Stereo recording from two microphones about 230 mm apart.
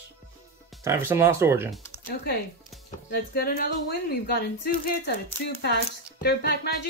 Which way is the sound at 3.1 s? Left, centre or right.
Left.